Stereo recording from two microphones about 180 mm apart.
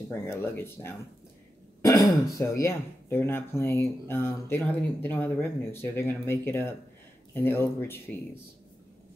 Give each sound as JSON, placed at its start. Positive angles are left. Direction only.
{"t": 0.1, "sound": "speech", "side_deg": 15}
{"t": 1.8, "sound": "throat clearing", "side_deg": 20}
{"t": 2.3, "sound": "speech", "side_deg": 15}